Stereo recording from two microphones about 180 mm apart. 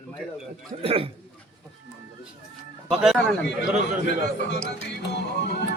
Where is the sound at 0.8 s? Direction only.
30° right (ahead or behind).